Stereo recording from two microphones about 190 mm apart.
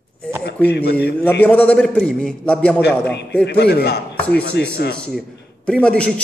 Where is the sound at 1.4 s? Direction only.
5° left (ahead or behind).